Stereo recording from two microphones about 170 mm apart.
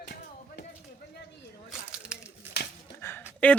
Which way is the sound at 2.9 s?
15° left (ahead or behind).